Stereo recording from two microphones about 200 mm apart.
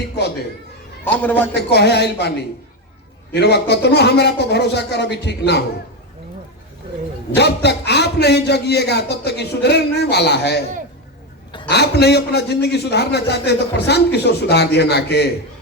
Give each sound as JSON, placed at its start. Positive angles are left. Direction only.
{"t": 1.0, "sound": "a man's voice", "side_deg": 10}
{"t": 1.5, "sound": "a man's voice", "side_deg": 55}
{"t": 3.3, "sound": "a man's voice", "side_deg": 55}
{"t": 7.3, "sound": "a man's voice", "side_deg": 55}
{"t": 11.7, "sound": "a man's voice", "side_deg": 55}